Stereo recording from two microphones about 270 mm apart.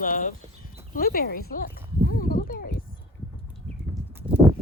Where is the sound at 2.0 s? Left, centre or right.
Left.